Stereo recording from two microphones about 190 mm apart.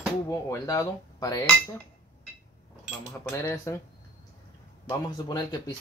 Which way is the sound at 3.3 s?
15° left (ahead or behind).